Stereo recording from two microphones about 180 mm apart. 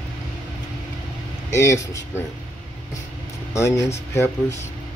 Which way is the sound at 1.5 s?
15° left (ahead or behind).